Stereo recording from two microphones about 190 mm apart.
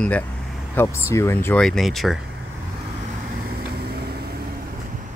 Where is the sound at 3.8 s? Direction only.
55° right (ahead or behind).